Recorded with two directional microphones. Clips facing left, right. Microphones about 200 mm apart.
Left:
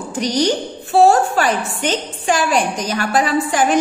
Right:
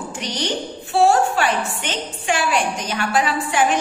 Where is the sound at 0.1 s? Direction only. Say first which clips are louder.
Left 10 dB; 40° left (ahead or behind).